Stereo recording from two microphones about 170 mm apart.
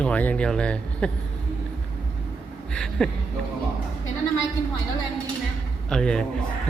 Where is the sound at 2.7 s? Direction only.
5° left (ahead or behind).